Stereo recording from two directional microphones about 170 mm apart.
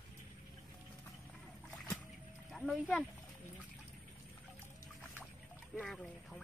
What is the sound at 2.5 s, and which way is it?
Speech, centre (ahead or behind).